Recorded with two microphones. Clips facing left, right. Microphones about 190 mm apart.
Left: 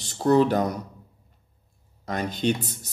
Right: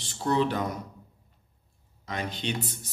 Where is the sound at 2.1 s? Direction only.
45° left (ahead or behind).